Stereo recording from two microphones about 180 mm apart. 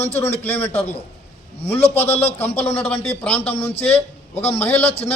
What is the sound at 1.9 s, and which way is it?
A man's voice, 10° left (ahead or behind).